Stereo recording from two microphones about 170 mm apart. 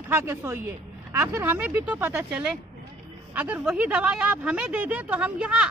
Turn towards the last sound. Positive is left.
turn(degrees=-5)  # may be behind; listen again after turning